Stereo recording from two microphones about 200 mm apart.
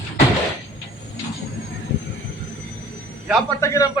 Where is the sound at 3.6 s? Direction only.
15° left (ahead or behind).